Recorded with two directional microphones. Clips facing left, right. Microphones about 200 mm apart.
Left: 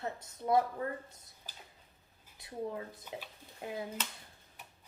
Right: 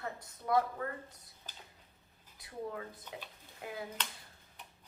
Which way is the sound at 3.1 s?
10° left (ahead or behind).